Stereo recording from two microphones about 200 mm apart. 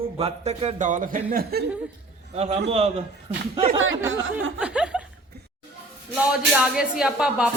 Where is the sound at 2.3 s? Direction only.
30° right (ahead or behind).